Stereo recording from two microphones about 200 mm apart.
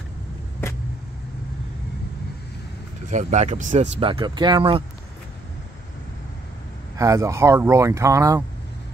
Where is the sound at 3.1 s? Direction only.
35° right (ahead or behind).